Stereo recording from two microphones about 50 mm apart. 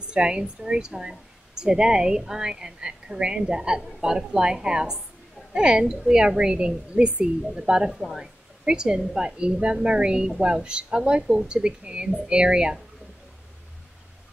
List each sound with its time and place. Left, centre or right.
0.1 s a woman's voice: centre